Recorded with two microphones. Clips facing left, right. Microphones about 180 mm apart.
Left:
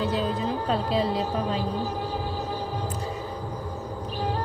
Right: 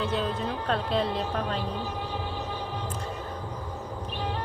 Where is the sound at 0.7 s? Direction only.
5° left (ahead or behind).